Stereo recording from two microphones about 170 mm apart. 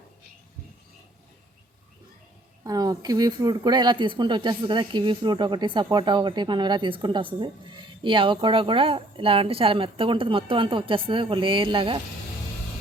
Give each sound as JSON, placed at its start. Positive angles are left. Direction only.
{"t": 2.6, "sound": "speech", "side_deg": -20}